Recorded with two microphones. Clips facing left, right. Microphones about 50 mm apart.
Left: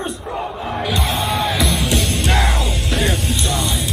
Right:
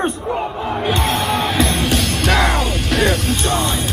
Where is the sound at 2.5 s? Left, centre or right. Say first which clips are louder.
Right 3 dB; right.